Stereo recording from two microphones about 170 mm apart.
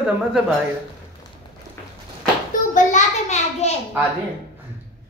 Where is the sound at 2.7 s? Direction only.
45° left (ahead or behind).